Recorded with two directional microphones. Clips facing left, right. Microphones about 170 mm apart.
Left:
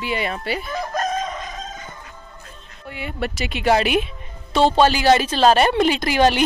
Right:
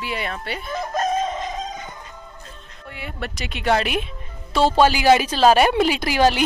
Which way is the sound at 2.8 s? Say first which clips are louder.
Left 5 dB; centre (ahead or behind).